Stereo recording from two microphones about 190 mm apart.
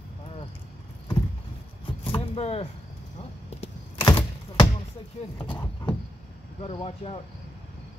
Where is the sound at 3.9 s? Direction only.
10° left (ahead or behind).